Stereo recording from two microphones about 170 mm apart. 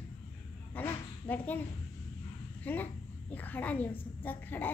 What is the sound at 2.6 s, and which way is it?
A woman's voice, 10° left (ahead or behind).